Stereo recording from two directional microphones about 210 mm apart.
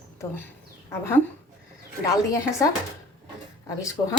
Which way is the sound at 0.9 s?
10° left (ahead or behind).